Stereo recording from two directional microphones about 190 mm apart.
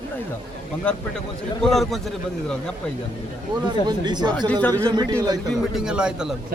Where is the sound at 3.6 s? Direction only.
20° right (ahead or behind).